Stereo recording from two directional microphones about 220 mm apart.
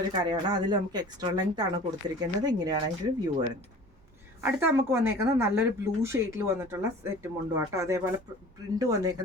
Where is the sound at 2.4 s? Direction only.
15° right (ahead or behind).